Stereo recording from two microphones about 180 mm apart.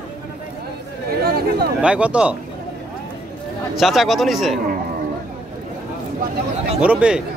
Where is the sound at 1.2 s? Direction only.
60° right (ahead or behind).